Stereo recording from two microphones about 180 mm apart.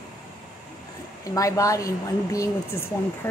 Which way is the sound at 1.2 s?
20° left (ahead or behind).